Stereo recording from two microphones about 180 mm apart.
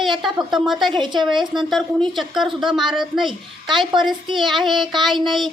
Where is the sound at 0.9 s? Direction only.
25° right (ahead or behind).